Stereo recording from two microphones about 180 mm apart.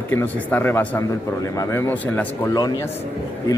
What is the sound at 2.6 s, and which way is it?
Speech, 20° left (ahead or behind).